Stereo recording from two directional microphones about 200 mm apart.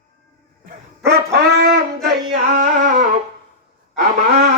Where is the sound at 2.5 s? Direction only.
50° right (ahead or behind).